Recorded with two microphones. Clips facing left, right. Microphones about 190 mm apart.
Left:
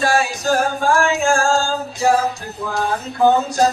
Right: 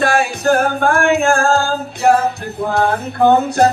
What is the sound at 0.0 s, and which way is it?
Singing, 60° right (ahead or behind).